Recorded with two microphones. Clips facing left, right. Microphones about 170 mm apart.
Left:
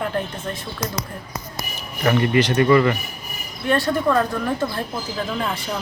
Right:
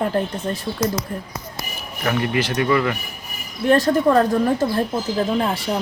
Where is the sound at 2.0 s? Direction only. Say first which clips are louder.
Left 3 dB; centre (ahead or behind).